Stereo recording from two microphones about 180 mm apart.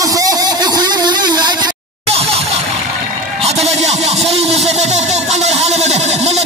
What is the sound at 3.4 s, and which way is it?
Music, 35° right (ahead or behind).